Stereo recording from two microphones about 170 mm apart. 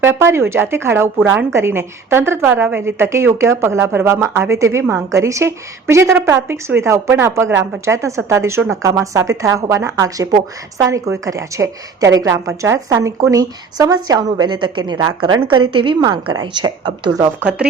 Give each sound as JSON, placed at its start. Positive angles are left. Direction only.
{"t": 0.0, "sound": "a woman's voice", "side_deg": -15}